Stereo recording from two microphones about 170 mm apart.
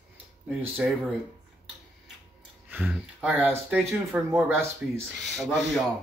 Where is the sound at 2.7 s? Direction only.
10° right (ahead or behind).